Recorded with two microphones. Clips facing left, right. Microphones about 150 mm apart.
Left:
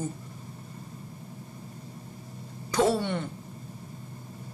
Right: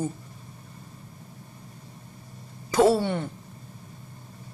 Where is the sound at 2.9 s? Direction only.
35° right (ahead or behind).